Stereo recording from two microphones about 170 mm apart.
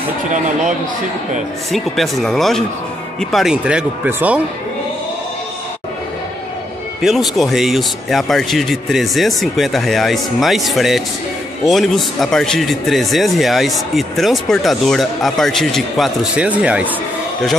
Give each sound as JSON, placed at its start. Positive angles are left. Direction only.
{"t": 0.3, "sound": "speech", "side_deg": -50}
{"t": 1.7, "sound": "speech", "side_deg": 0}
{"t": 7.0, "sound": "speech", "side_deg": 0}